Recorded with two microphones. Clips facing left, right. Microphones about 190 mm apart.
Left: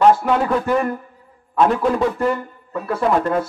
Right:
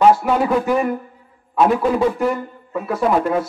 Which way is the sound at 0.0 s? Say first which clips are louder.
Right 1 dB; 10° right (ahead or behind).